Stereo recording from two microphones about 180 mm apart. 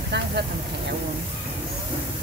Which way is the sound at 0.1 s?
70° right (ahead or behind).